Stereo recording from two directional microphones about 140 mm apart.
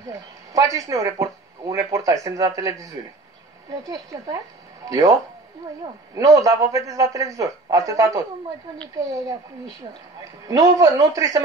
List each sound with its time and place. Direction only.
0.5 s speech: 25° right (ahead or behind)
6.1 s speech: 25° right (ahead or behind)
10.4 s speech: 25° right (ahead or behind)